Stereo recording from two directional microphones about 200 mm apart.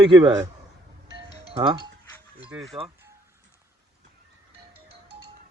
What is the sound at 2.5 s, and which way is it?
Speech, centre (ahead or behind).